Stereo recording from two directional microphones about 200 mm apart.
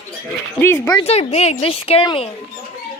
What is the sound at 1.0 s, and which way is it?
Speech, 30° left (ahead or behind).